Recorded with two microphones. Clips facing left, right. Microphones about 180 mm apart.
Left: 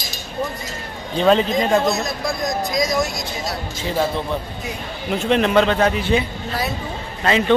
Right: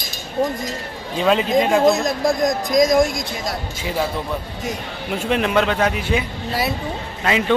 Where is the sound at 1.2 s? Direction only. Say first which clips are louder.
Left 1 dB; 5° right (ahead or behind).